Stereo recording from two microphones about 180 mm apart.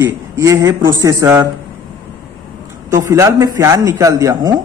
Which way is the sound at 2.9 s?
20° right (ahead or behind).